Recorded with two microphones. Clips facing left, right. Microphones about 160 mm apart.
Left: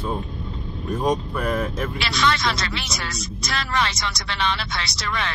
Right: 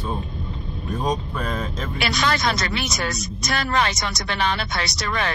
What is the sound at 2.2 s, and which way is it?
Speech, 45° right (ahead or behind).